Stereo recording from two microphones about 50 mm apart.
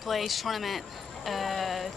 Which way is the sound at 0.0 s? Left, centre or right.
Centre.